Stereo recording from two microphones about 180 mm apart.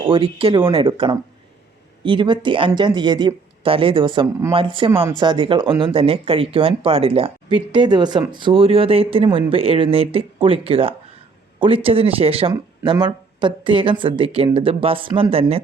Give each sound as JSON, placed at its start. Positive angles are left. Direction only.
{"t": 0.1, "sound": "speech", "side_deg": -30}